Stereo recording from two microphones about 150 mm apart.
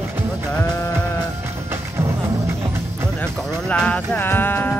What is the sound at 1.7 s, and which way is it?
Music, 15° right (ahead or behind).